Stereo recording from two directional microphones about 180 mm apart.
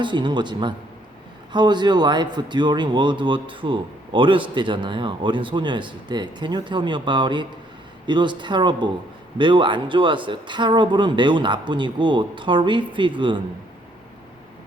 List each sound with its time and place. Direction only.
0.0 s speech: 25° right (ahead or behind)